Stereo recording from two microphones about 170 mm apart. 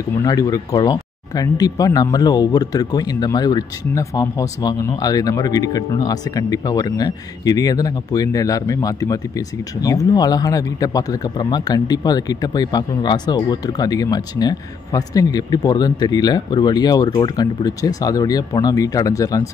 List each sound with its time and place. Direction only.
0.2 s speech: 20° left (ahead or behind)